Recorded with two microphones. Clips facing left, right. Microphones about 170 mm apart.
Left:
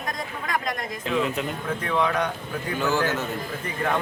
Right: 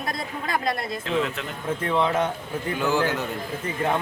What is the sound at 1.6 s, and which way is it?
Speech, 25° right (ahead or behind).